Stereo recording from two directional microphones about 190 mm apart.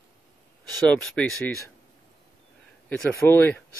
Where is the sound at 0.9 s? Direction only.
5° left (ahead or behind).